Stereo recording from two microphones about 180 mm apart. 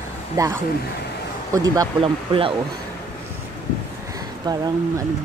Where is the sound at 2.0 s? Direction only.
30° right (ahead or behind).